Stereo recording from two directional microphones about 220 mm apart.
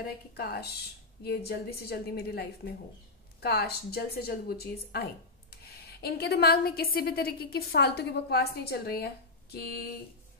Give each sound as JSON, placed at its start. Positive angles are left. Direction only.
{"t": 0.0, "sound": "a woman's voice", "side_deg": 45}